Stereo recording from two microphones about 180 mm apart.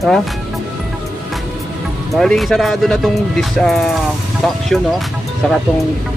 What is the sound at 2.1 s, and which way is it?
Speech, centre (ahead or behind).